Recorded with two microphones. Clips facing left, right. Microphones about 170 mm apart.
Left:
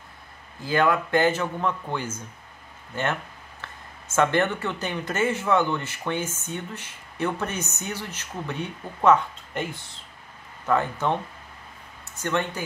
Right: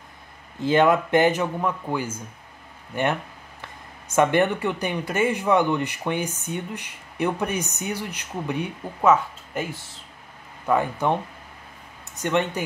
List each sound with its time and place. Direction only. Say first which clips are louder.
0.6 s speech: right 4 dB; 20° right (ahead or behind)